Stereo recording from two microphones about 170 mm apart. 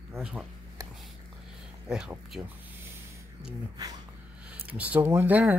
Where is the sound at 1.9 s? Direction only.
5° right (ahead or behind).